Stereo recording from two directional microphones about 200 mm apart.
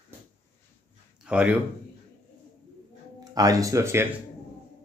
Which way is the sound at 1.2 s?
5° right (ahead or behind).